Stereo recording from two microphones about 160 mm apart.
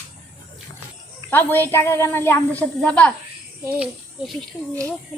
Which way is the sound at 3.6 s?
5° right (ahead or behind).